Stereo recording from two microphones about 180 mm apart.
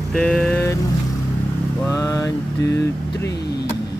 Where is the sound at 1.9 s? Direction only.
15° left (ahead or behind).